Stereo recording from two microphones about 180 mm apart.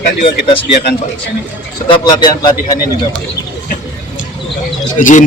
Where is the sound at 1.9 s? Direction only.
25° left (ahead or behind).